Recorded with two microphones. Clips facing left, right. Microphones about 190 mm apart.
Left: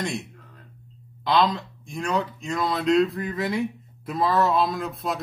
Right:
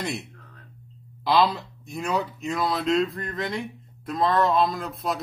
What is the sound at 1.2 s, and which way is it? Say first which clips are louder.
Speech: even; 5° right (ahead or behind).